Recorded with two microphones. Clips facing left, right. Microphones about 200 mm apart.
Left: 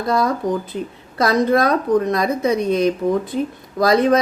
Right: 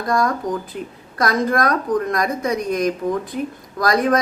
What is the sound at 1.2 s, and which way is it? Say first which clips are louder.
Speech: left 3 dB; 25° left (ahead or behind).